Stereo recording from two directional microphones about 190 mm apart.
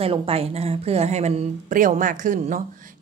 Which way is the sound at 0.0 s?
30° right (ahead or behind).